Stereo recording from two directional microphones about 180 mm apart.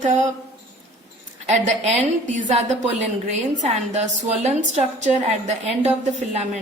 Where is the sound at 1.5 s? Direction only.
40° right (ahead or behind).